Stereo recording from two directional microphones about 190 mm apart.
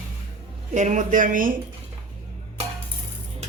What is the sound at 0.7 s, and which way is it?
Speech, 40° right (ahead or behind).